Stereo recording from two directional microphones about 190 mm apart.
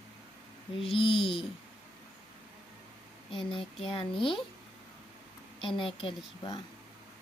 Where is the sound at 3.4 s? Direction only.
30° left (ahead or behind).